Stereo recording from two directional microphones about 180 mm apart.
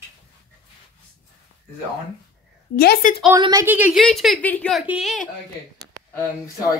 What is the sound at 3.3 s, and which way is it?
Speech, 20° right (ahead or behind).